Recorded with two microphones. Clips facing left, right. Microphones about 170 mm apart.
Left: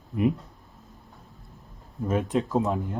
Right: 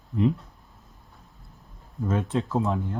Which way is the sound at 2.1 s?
15° left (ahead or behind).